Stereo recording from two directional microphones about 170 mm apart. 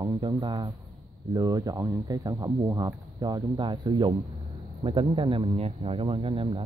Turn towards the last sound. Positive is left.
turn(degrees=-30)  # may be behind; listen again after turning